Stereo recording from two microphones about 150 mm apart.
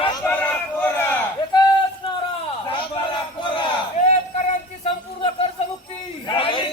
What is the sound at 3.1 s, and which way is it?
Battle cry, 35° left (ahead or behind).